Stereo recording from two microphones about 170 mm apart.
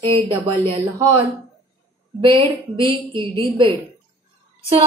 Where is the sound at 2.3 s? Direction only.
30° right (ahead or behind).